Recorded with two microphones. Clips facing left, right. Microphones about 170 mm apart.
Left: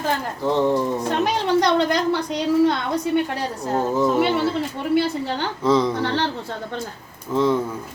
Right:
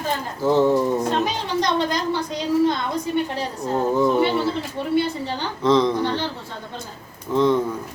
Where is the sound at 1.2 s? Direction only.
65° left (ahead or behind).